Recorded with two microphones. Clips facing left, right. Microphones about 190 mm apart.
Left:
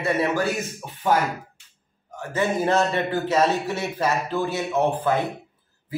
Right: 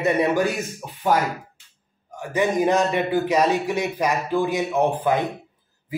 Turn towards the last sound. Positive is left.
turn(degrees=-15)  # may be behind; listen again after turning